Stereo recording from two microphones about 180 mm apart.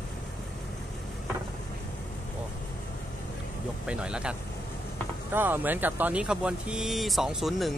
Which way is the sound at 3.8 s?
5° right (ahead or behind).